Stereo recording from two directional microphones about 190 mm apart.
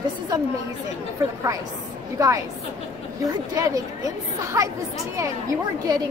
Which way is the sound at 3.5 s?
20° right (ahead or behind).